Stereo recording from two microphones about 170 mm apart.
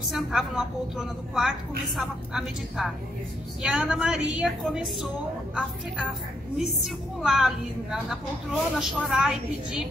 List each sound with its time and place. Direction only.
0.0 s a woman's voice: centre (ahead or behind)